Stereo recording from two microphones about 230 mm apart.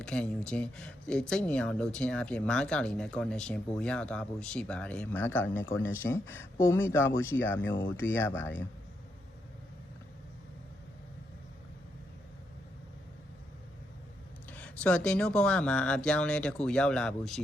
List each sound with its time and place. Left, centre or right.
0.0 s speech: centre
14.5 s speech: centre